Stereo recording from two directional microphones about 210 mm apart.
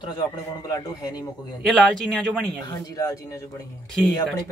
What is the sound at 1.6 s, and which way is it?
Speech, 5° left (ahead or behind).